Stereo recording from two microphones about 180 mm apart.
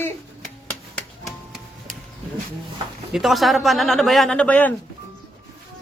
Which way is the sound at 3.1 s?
Centre (ahead or behind).